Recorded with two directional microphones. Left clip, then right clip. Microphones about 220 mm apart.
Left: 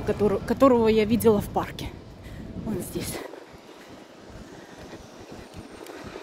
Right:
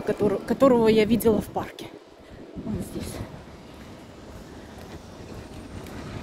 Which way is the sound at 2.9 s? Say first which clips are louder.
Left 3 dB; 35° left (ahead or behind).